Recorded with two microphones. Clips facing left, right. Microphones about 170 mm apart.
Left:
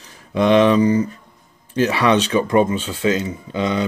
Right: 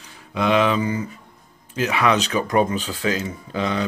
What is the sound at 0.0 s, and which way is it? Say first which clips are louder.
Speech: left 5 dB; 40° left (ahead or behind).